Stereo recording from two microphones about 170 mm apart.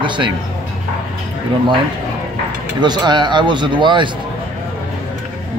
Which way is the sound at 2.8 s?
25° right (ahead or behind).